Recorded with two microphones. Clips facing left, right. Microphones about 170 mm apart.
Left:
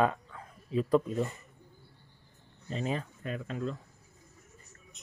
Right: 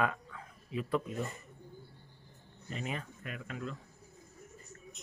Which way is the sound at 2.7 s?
30° left (ahead or behind).